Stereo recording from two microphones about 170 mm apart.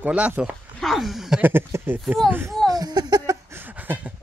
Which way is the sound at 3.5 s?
10° right (ahead or behind).